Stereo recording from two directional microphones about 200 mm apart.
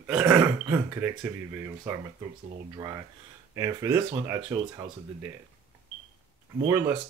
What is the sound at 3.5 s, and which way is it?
Speech, 15° right (ahead or behind).